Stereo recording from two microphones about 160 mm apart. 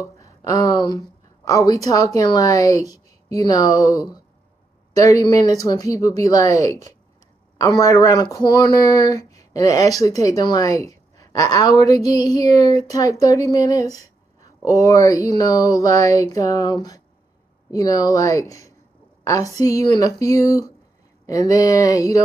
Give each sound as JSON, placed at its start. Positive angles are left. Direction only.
{"t": 0.0, "sound": "a woman's voice", "side_deg": 20}